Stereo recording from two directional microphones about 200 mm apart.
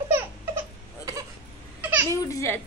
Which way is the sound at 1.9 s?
10° right (ahead or behind).